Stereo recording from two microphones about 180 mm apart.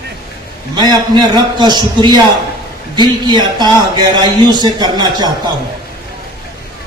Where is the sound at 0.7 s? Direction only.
20° right (ahead or behind).